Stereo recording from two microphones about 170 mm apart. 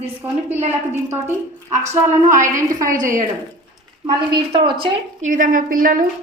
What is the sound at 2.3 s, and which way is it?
Speech, 20° right (ahead or behind).